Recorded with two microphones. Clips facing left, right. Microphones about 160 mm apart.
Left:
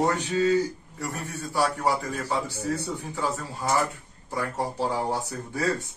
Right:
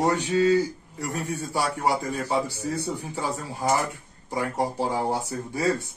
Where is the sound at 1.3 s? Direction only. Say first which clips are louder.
Left 3 dB; 10° right (ahead or behind).